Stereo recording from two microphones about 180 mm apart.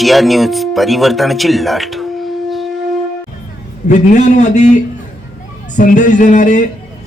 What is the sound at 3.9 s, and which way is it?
A man's voice, 40° left (ahead or behind).